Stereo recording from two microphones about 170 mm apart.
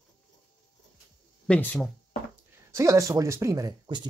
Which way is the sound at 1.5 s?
10° left (ahead or behind).